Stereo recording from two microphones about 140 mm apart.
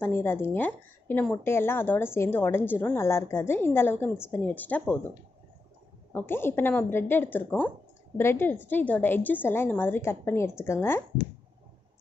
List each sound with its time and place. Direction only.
0.0 s a woman's voice: 15° left (ahead or behind)
6.1 s a woman's voice: 15° left (ahead or behind)